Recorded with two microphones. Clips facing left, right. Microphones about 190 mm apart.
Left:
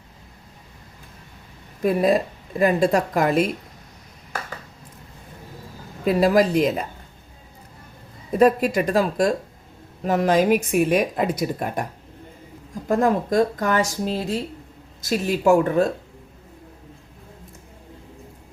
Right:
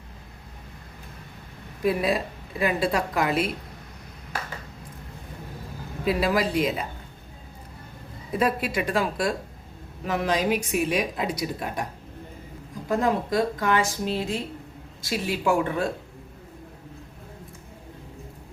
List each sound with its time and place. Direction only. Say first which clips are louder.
1.8 s speech: left 5 dB; 45° left (ahead or behind)
6.1 s speech: left 6 dB; 45° left (ahead or behind)
8.4 s a woman's voice: left 8 dB; 40° left (ahead or behind)
12.9 s a woman's voice: left 4 dB; 45° left (ahead or behind)